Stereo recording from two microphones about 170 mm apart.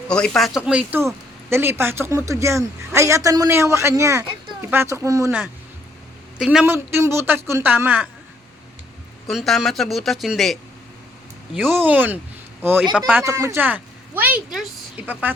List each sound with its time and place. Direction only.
0.1 s speech: 5° left (ahead or behind); by 5.3 s 20° right (ahead or behind)
6.4 s speech: 5° right (ahead or behind)
9.2 s a man's voice: centre (ahead or behind)
11.5 s speech: 10° right (ahead or behind)